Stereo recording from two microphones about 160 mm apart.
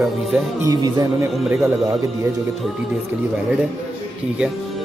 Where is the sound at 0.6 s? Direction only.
20° right (ahead or behind).